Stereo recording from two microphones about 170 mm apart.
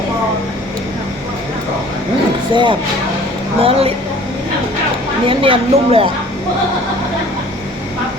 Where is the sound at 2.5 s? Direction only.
25° right (ahead or behind).